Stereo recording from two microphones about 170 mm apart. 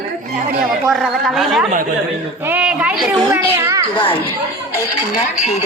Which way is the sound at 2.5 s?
10° right (ahead or behind).